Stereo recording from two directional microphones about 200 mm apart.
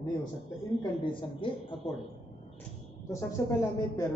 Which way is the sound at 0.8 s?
25° left (ahead or behind).